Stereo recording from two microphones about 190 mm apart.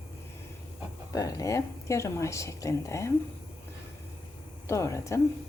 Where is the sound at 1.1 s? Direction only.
15° left (ahead or behind).